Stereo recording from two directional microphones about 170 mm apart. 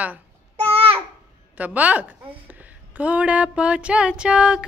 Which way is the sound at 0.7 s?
35° right (ahead or behind).